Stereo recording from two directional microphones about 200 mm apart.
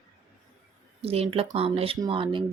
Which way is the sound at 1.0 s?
30° right (ahead or behind).